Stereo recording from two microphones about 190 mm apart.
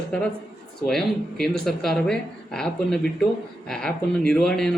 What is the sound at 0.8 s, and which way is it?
Speech, centre (ahead or behind).